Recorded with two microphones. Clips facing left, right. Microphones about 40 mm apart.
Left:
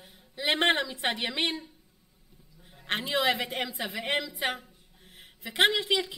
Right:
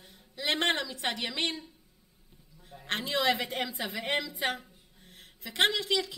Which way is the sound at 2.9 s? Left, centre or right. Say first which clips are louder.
Left 1 dB; centre.